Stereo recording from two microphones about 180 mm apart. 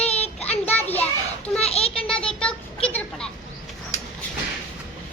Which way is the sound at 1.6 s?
35° left (ahead or behind).